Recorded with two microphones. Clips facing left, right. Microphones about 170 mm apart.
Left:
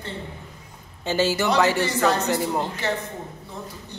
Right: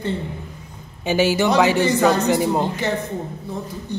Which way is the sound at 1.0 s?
15° right (ahead or behind).